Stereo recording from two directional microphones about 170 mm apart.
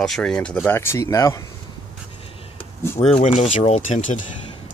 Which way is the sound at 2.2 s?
35° left (ahead or behind).